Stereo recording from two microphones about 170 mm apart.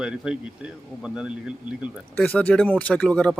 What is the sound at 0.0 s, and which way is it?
A man's voice, 5° right (ahead or behind).